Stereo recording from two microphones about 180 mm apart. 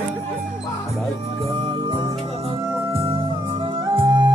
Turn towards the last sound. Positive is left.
turn(degrees=-25)  # may be behind; listen again after turning